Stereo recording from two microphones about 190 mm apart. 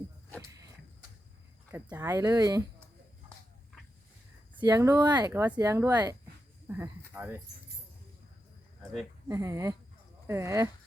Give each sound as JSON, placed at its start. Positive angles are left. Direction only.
{"t": 0.3, "sound": "a sound", "side_deg": -15}
{"t": 1.7, "sound": "speech", "side_deg": -10}
{"t": 4.5, "sound": "speech", "side_deg": -20}
{"t": 9.3, "sound": "speech", "side_deg": -15}